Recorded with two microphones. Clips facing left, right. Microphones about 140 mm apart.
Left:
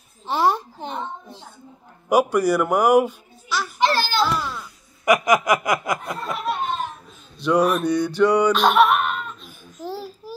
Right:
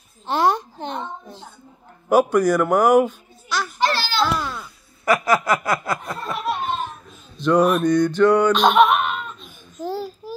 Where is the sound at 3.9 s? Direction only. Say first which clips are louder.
Left 3 dB; 45° left (ahead or behind).